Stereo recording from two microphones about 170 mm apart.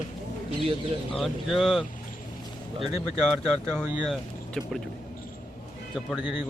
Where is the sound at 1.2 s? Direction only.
Centre (ahead or behind).